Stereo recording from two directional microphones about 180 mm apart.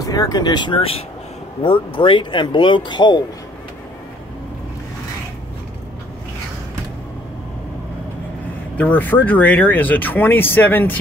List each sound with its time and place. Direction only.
0.0 s speech: 20° left (ahead or behind)
8.7 s speech: 10° left (ahead or behind)